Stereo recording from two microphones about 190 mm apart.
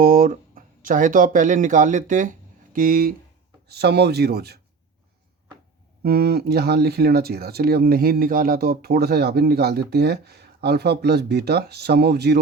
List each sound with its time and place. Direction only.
0.0 s speech: 45° right (ahead or behind)
6.0 s speech: 55° right (ahead or behind)